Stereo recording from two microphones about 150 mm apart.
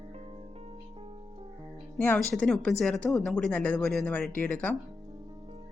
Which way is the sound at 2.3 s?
5° left (ahead or behind).